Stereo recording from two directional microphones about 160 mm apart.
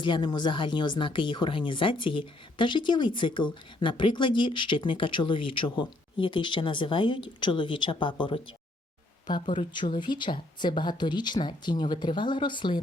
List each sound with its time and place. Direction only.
0.0 s a woman's voice: 30° left (ahead or behind)